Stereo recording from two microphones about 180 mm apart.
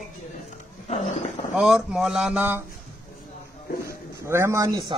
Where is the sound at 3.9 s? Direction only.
15° right (ahead or behind).